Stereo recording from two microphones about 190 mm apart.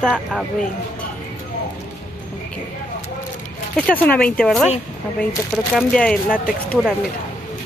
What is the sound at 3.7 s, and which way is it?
Speech, 10° left (ahead or behind).